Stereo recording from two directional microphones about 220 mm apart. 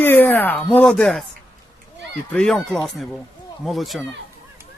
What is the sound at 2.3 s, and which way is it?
Speech, 5° left (ahead or behind).